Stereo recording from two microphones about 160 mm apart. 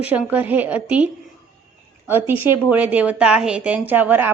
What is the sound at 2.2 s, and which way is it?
Speech, 10° right (ahead or behind).